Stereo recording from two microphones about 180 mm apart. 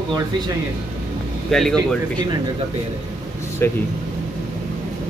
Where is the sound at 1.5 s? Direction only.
5° left (ahead or behind).